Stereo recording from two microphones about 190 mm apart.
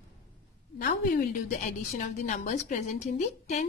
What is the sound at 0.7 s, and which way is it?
A woman's voice, 45° left (ahead or behind).